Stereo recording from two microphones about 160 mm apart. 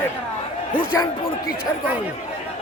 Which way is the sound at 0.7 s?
15° left (ahead or behind).